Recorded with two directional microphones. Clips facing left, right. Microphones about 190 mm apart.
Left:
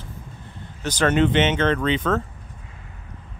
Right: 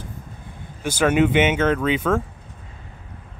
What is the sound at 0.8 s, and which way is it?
Speech, 10° right (ahead or behind).